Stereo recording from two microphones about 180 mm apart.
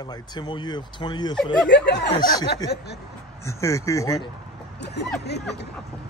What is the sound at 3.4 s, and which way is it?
Speech, 15° left (ahead or behind).